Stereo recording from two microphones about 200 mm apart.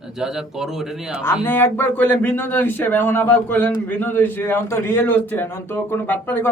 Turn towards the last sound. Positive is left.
turn(degrees=10)  # may be behind; listen again after turning